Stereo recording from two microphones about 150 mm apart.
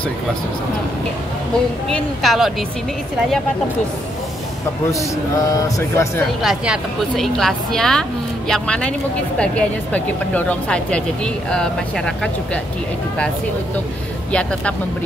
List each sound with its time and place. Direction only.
1.9 s a woman's voice: centre (ahead or behind)
5.5 s speech: 20° left (ahead or behind)
6.4 s a woman's voice: 5° right (ahead or behind)